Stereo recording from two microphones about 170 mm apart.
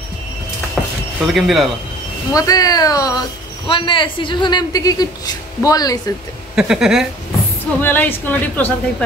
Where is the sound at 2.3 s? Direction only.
20° left (ahead or behind).